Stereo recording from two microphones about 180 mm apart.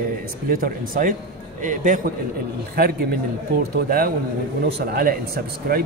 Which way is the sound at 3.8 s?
55° right (ahead or behind).